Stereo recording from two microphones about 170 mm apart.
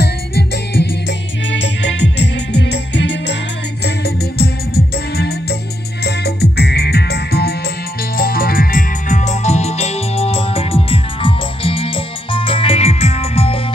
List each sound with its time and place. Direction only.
0.0 s music: 75° left (ahead or behind); by 3.3 s 90° left
3.8 s music: 70° left (ahead or behind)
8.2 s music: 60° left (ahead or behind); by 13.6 s 35° left (ahead or behind)